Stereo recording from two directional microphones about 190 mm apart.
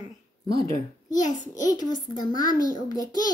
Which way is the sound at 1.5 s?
20° left (ahead or behind).